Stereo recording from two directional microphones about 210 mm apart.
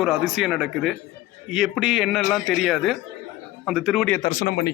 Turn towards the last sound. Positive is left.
turn(degrees=35)  # may be behind; listen again after turning